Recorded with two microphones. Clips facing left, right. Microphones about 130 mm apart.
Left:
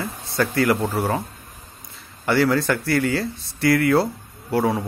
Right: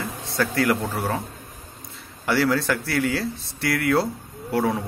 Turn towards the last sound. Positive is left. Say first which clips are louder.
# left 2 dB
turn(degrees=5)  # may be behind; listen again after turning